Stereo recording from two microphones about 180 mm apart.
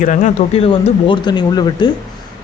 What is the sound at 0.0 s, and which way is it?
Speech, 45° left (ahead or behind).